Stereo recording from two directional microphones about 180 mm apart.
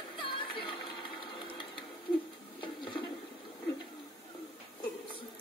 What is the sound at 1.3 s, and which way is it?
Sewing machine, 25° left (ahead or behind).